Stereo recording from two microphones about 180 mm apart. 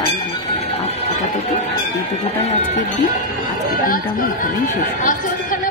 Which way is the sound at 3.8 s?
50° left (ahead or behind).